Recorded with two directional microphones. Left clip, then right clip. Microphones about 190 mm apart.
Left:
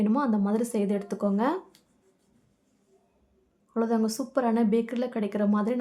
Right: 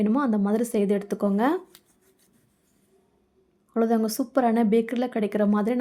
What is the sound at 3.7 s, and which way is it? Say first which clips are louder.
A woman's voice: right 3 dB; 20° right (ahead or behind).